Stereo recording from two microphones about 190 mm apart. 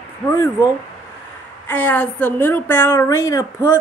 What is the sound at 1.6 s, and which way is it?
A woman's voice, 10° left (ahead or behind).